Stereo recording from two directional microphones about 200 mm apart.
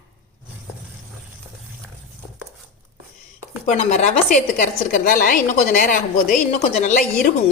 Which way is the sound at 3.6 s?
40° left (ahead or behind).